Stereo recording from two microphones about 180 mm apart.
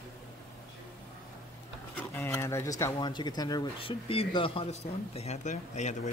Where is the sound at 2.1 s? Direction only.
15° left (ahead or behind).